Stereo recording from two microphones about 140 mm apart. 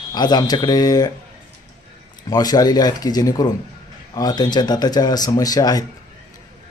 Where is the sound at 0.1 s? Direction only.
30° left (ahead or behind).